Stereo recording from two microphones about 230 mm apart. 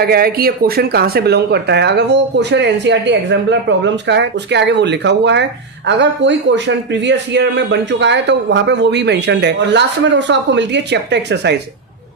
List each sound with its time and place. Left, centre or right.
0.0 s speech: right